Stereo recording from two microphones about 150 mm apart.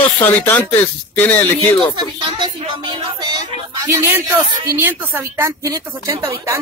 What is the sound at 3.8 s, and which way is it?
A woman's voice, 15° right (ahead or behind).